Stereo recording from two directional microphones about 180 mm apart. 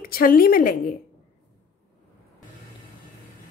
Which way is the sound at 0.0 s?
50° left (ahead or behind).